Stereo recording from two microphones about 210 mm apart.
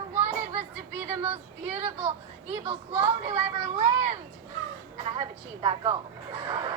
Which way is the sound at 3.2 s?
30° right (ahead or behind).